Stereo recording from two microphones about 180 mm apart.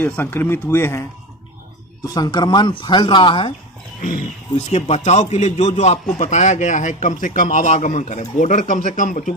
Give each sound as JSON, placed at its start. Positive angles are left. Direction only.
{"t": 0.0, "sound": "speech", "side_deg": 10}
{"t": 2.1, "sound": "speech", "side_deg": 25}
{"t": 4.6, "sound": "a man's voice", "side_deg": 35}